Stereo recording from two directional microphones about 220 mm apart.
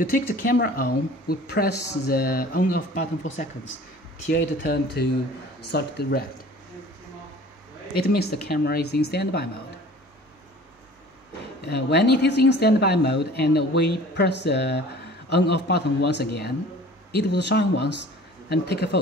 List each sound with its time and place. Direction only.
0.1 s speech: 40° left (ahead or behind)
8.0 s speech: 45° left (ahead or behind)
11.6 s speech: 50° left (ahead or behind)